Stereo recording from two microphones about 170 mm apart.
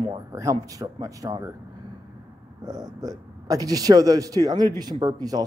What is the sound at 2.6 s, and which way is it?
Speech, 20° right (ahead or behind).